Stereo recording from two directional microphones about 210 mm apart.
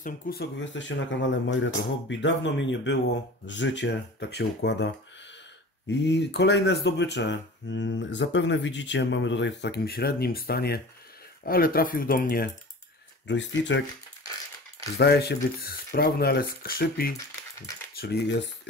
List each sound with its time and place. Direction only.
0.0 s speech: 50° left (ahead or behind)
5.9 s speech: 55° left (ahead or behind)
13.3 s speech: 60° left (ahead or behind)
15.0 s speech: 50° left (ahead or behind)